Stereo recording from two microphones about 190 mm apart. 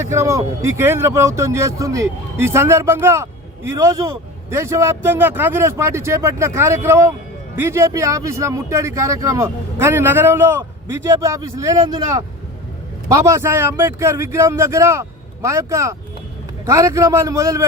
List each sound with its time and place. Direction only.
0.0 s speech: 15° right (ahead or behind)